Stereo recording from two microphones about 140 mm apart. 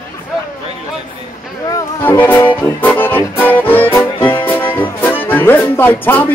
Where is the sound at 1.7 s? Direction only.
15° left (ahead or behind).